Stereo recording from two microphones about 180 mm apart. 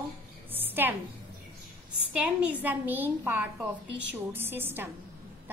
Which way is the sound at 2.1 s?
5° right (ahead or behind).